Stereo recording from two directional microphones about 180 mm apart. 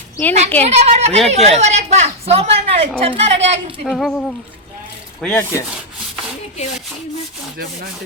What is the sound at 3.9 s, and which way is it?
A woman's voice, 5° left (ahead or behind).